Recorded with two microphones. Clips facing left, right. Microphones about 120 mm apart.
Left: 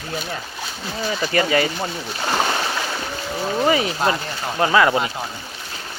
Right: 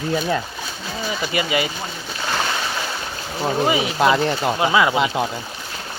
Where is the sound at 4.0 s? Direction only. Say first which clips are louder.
Right 5 dB; 75° right (ahead or behind).